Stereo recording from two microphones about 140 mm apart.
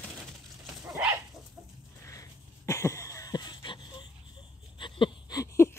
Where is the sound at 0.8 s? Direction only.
10° right (ahead or behind).